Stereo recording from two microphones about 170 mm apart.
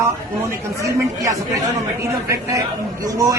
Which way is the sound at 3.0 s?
20° right (ahead or behind).